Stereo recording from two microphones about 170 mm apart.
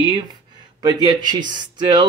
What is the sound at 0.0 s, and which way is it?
Speech, 25° right (ahead or behind).